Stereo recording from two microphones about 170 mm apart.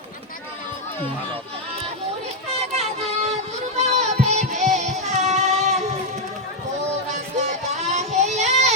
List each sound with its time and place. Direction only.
2.5 s child singing: 35° right (ahead or behind)
3.8 s music: 40° right (ahead or behind)
7.8 s child singing: 40° right (ahead or behind)